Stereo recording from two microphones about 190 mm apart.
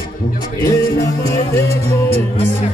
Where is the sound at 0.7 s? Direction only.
15° left (ahead or behind).